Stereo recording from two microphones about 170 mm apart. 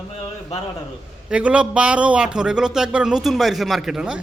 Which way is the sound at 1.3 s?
5° right (ahead or behind).